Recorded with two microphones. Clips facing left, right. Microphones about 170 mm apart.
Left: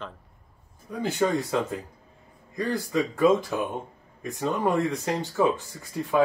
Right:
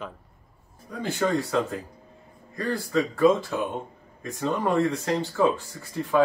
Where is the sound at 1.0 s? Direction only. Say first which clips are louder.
Even; 20° left (ahead or behind).